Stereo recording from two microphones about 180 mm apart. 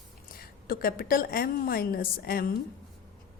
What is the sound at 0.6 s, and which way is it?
A woman's voice, 55° left (ahead or behind).